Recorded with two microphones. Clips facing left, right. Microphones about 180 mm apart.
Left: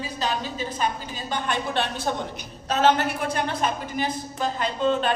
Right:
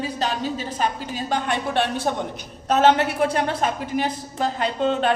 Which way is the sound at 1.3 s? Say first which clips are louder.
Right 3 dB; 65° right (ahead or behind).